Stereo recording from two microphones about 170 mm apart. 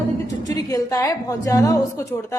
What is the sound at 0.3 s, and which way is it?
A woman's voice, 20° left (ahead or behind).